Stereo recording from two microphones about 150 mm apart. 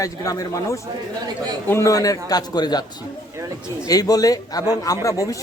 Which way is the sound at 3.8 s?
25° left (ahead or behind).